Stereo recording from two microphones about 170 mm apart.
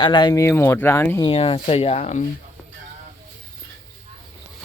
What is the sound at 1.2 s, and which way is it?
Speech, 30° left (ahead or behind).